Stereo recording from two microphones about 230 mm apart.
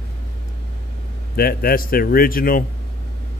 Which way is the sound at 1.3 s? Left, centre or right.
Left.